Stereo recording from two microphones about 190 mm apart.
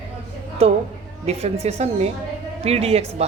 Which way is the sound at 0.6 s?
30° right (ahead or behind).